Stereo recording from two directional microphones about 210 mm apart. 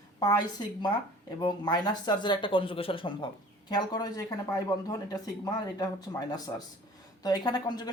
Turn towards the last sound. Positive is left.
turn(degrees=20)  # may be behind; listen again after turning